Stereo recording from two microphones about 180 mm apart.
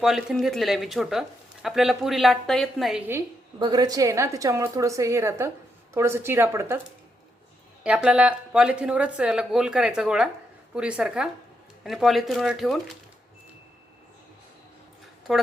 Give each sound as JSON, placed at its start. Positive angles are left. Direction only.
{"t": 0.0, "sound": "speech", "side_deg": -5}
{"t": 3.6, "sound": "a woman's voice", "side_deg": -20}
{"t": 7.9, "sound": "speech", "side_deg": -5}
{"t": 15.3, "sound": "speech", "side_deg": 0}